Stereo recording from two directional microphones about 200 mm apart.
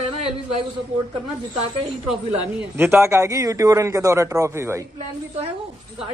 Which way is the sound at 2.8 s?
10° right (ahead or behind).